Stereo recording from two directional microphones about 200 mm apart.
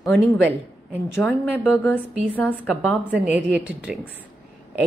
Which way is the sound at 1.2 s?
5° right (ahead or behind).